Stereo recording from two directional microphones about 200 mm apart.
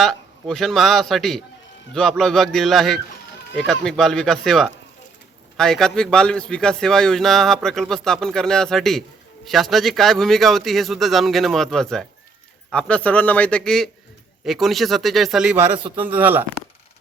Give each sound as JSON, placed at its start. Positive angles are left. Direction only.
{"t": 0.0, "sound": "a man's voice", "side_deg": 0}
{"t": 15.7, "sound": "a man's voice", "side_deg": -25}
{"t": 16.1, "sound": "speech", "side_deg": -10}